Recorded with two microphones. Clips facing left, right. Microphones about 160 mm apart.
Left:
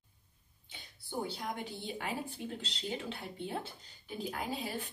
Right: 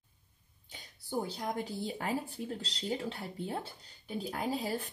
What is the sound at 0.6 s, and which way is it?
A woman's voice, 40° right (ahead or behind).